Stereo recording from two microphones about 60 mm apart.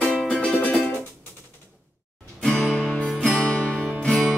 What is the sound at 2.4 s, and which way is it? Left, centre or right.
Music, centre.